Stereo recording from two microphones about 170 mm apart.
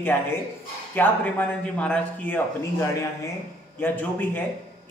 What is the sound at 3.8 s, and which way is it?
Speech, 10° left (ahead or behind).